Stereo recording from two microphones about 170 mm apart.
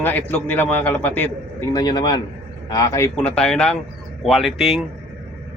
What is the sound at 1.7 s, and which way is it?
A man's voice, 25° left (ahead or behind).